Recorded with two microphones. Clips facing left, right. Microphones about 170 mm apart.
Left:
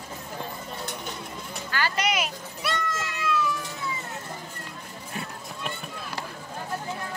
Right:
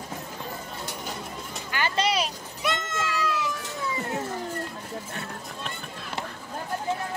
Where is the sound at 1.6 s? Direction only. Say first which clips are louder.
Right 1 dB; 20° right (ahead or behind).